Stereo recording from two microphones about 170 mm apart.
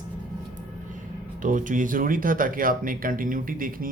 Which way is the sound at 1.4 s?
50° right (ahead or behind).